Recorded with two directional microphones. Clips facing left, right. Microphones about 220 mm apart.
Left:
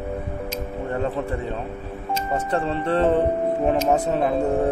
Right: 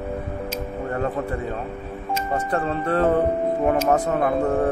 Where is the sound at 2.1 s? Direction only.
Centre (ahead or behind).